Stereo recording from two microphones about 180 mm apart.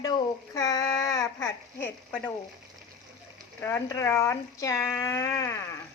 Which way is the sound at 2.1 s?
5° left (ahead or behind).